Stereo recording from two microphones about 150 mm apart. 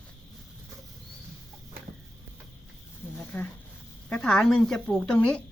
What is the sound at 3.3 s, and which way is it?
A woman's voice, 15° left (ahead or behind).